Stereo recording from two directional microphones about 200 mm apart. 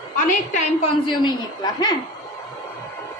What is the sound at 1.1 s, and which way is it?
Speech, 20° left (ahead or behind).